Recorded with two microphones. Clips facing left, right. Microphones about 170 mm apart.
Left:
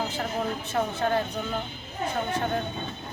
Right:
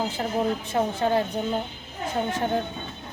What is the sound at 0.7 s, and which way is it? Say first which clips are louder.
Speech: right 1 dB; 15° right (ahead or behind).